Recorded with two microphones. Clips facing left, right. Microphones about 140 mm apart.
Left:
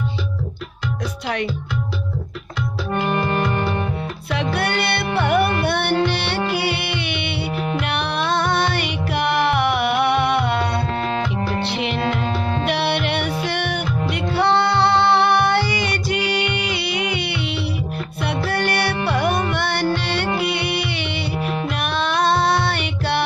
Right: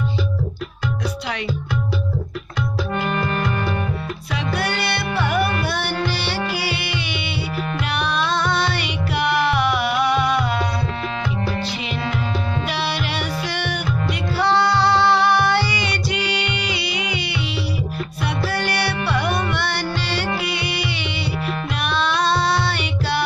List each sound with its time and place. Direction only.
3.0 s music: 25° left (ahead or behind)
4.3 s music: 60° left (ahead or behind)